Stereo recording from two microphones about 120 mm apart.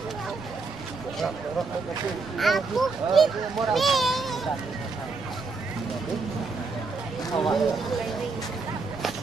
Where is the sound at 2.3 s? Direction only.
Centre (ahead or behind).